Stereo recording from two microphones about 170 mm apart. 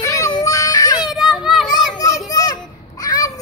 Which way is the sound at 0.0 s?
20° left (ahead or behind).